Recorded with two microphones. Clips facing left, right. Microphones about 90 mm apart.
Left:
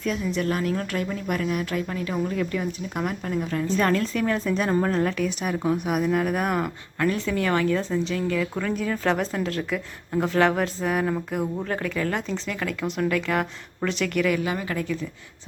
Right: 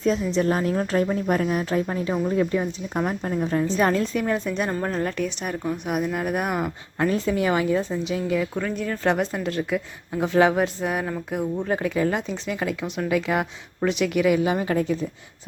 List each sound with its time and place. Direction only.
0.0 s speech: 30° right (ahead or behind)
3.8 s speech: 20° right (ahead or behind)
4.1 s a woman's voice: 5° right (ahead or behind)
7.0 s a woman's voice: 25° right (ahead or behind); by 8.1 s 5° right (ahead or behind)
8.1 s speech: 15° right (ahead or behind)
8.5 s a woman's voice: centre (ahead or behind)
11.7 s speech: 15° right (ahead or behind)
14.3 s speech: 25° right (ahead or behind)